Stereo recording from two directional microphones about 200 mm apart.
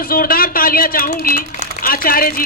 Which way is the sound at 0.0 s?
45° left (ahead or behind).